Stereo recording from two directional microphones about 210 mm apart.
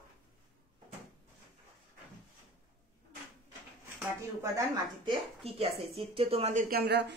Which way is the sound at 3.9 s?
15° right (ahead or behind).